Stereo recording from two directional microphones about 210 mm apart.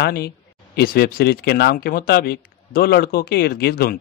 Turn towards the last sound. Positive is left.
turn(degrees=45)  # may be behind; listen again after turning